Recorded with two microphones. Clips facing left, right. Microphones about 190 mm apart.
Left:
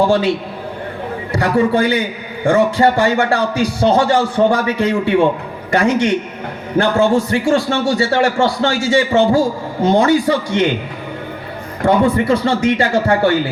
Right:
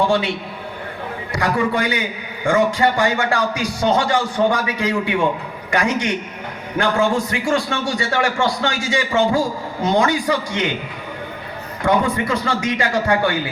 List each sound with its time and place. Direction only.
1.3 s a man's voice: 35° left (ahead or behind)
11.8 s a man's voice: 35° left (ahead or behind)